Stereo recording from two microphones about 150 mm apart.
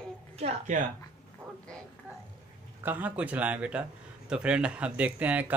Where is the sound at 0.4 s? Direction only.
50° right (ahead or behind).